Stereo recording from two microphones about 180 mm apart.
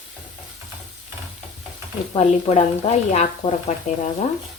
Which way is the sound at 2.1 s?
35° left (ahead or behind).